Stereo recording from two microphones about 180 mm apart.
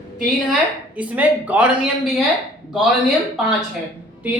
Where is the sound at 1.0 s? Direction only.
10° right (ahead or behind).